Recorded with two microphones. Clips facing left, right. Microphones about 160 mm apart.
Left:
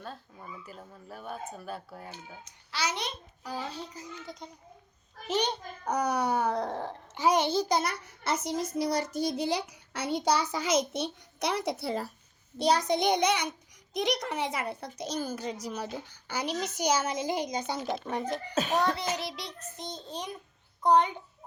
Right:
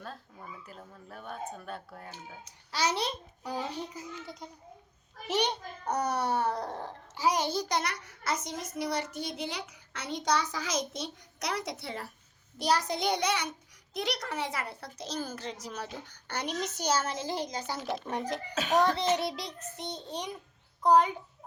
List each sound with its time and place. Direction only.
0.0 s speech: centre (ahead or behind)
2.4 s a child's voice: 35° right (ahead or behind)
3.5 s a child's voice: 15° right (ahead or behind)
5.8 s a child's voice: 10° left (ahead or behind)
6.5 s speech: centre (ahead or behind)
7.2 s a child's voice: 25° left (ahead or behind)
12.5 s a child's voice: 20° left (ahead or behind)
17.8 s speech: 5° left (ahead or behind)
18.9 s a child's voice: 25° right (ahead or behind)
19.5 s a child's voice: 65° right (ahead or behind)
20.1 s a child's voice: 15° right (ahead or behind)